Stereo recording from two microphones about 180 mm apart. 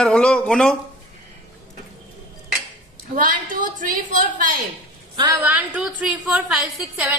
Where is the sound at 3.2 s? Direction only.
45° right (ahead or behind).